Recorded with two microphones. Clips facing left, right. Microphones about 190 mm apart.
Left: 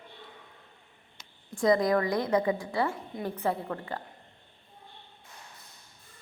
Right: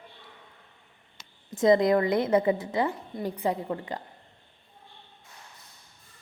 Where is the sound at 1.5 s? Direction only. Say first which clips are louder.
Right 4 dB; 20° right (ahead or behind).